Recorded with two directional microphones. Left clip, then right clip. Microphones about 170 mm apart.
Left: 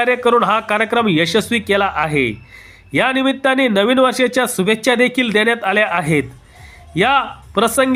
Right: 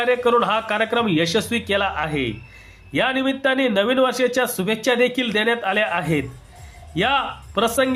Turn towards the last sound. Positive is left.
turn(degrees=25)  # may be behind; listen again after turning